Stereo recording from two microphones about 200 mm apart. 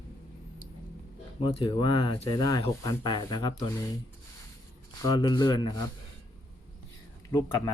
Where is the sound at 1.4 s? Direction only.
25° left (ahead or behind).